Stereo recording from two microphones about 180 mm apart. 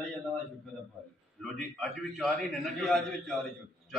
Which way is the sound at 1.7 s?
Centre (ahead or behind).